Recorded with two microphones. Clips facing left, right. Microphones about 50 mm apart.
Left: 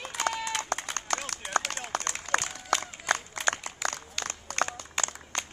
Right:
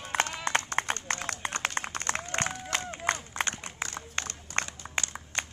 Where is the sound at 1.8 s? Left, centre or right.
Right.